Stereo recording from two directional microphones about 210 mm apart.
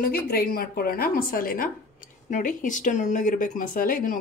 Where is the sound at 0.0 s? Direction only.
45° left (ahead or behind).